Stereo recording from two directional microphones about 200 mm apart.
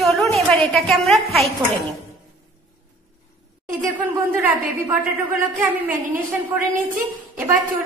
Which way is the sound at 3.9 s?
10° right (ahead or behind).